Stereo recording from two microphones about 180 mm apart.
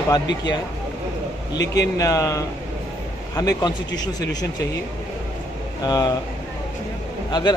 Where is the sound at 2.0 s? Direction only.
15° left (ahead or behind).